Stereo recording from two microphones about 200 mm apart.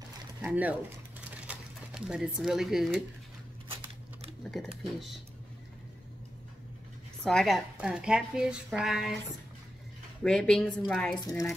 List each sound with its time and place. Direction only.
0.4 s speech: 5° right (ahead or behind)
1.2 s a sound: 5° right (ahead or behind)
3.6 s a sound: 25° right (ahead or behind)
7.2 s a woman's voice: centre (ahead or behind)
10.2 s a woman's voice: 5° left (ahead or behind)
11.1 s speech: 15° left (ahead or behind)